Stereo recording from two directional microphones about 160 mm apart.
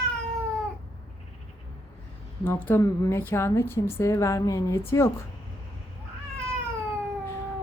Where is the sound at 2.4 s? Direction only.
10° left (ahead or behind).